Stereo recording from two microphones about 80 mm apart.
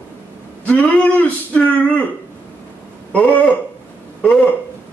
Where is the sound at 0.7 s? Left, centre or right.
Centre.